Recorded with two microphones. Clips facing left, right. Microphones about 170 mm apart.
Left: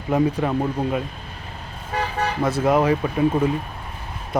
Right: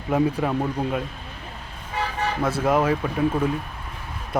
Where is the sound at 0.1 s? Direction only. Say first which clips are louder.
Left 2 dB; centre (ahead or behind).